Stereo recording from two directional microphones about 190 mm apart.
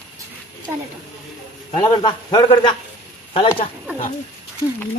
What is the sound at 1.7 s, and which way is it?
A man's voice, 20° left (ahead or behind).